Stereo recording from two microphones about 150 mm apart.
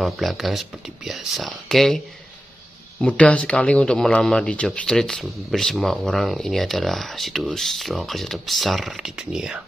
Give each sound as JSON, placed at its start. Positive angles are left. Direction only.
{"t": 0.0, "sound": "speech", "side_deg": 0}
{"t": 3.0, "sound": "speech", "side_deg": 10}